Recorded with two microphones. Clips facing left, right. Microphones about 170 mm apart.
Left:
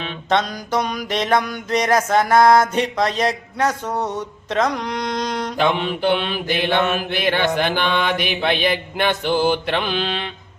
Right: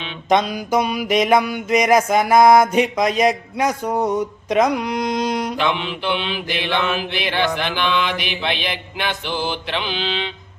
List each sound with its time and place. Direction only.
0.3 s music: 10° right (ahead or behind)
5.5 s mantra: 40° left (ahead or behind)